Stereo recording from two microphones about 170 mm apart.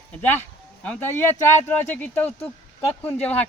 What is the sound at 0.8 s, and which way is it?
Speech, 10° left (ahead or behind).